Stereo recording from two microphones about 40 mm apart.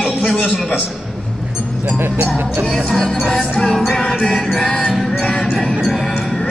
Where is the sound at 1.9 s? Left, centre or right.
Right.